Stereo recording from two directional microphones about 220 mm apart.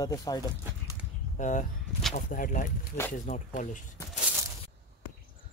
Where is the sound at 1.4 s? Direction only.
35° left (ahead or behind).